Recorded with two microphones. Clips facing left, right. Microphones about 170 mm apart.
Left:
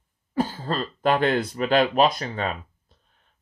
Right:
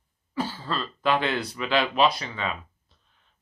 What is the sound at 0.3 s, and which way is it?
Speech, 45° left (ahead or behind).